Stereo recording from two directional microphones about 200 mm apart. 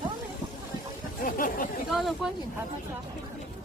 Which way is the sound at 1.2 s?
45° left (ahead or behind).